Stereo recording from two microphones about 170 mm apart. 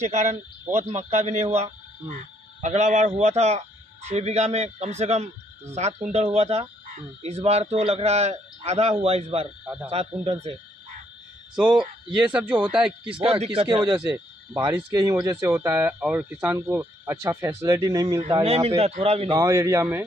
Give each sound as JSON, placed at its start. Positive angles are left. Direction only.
{"t": 0.0, "sound": "speech", "side_deg": -45}
{"t": 11.6, "sound": "speech", "side_deg": -25}
{"t": 12.3, "sound": "speech", "side_deg": -5}
{"t": 13.2, "sound": "speech", "side_deg": -35}
{"t": 18.4, "sound": "speech", "side_deg": -35}
{"t": 19.3, "sound": "speech", "side_deg": -15}